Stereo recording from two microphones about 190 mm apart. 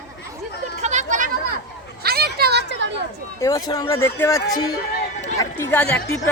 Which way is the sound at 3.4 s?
20° left (ahead or behind).